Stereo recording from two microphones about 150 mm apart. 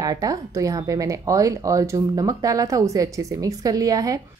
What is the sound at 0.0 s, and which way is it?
Speech, 25° right (ahead or behind).